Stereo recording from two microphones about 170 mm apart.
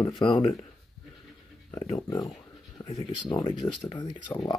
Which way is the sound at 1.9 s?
20° left (ahead or behind).